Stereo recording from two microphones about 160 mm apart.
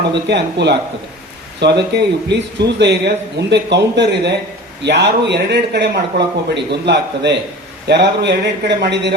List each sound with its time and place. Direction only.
0.1 s a man's voice: 90° right